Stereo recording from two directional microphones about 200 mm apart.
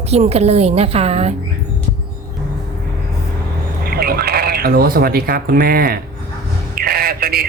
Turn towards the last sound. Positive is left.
turn(degrees=-50)  # may be behind; listen again after turning